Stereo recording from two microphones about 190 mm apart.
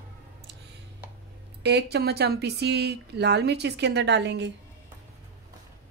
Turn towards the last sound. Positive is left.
turn(degrees=-65)  # may be behind; listen again after turning